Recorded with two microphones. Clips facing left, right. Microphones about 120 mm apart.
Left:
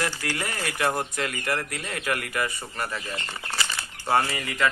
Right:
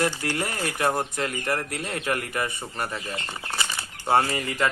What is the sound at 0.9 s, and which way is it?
Speech, 25° right (ahead or behind).